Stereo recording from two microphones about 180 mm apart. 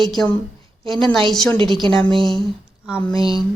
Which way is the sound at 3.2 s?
25° right (ahead or behind).